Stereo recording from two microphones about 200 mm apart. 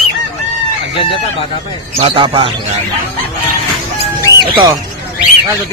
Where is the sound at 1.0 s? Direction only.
25° left (ahead or behind).